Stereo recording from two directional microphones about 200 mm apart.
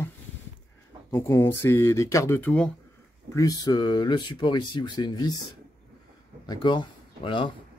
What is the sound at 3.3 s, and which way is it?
Speech, 20° left (ahead or behind).